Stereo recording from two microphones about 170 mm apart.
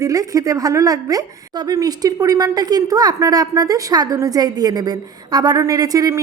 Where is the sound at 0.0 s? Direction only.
20° right (ahead or behind).